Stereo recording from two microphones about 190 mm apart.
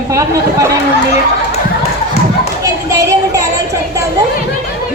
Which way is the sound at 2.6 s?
15° right (ahead or behind).